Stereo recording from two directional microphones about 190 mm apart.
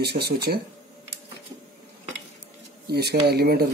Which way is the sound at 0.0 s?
60° right (ahead or behind).